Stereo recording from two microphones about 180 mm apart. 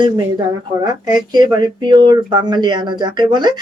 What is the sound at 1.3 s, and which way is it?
Speech, 25° right (ahead or behind).